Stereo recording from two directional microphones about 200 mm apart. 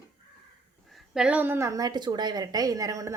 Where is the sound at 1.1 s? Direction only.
5° right (ahead or behind).